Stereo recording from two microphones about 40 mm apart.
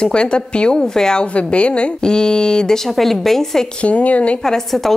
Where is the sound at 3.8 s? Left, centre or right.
Left.